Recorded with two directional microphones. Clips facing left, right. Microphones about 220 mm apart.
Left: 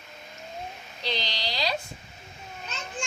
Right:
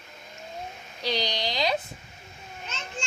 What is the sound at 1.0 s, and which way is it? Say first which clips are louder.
Speech: right 4 dB; 10° right (ahead or behind).